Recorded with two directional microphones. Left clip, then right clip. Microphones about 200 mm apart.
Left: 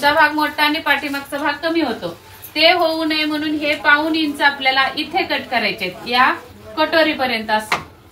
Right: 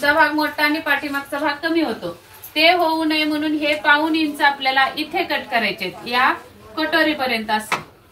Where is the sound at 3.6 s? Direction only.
5° left (ahead or behind).